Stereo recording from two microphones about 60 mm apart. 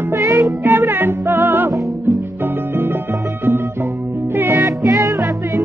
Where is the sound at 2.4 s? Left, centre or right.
Right.